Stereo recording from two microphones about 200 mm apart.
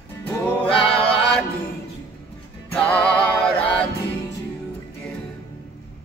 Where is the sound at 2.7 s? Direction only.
5° left (ahead or behind).